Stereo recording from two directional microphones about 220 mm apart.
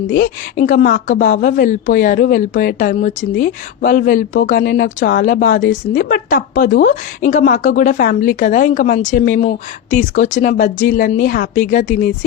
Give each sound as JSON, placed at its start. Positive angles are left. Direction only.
{"t": 0.1, "sound": "a woman's voice", "side_deg": 35}